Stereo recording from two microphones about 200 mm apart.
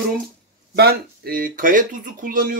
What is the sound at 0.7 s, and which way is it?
Speech, 50° right (ahead or behind).